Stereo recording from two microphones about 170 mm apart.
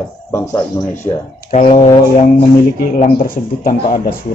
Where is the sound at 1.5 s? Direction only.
40° left (ahead or behind).